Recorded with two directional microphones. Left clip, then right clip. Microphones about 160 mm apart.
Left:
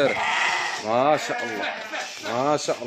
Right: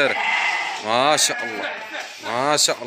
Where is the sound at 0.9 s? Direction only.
5° left (ahead or behind).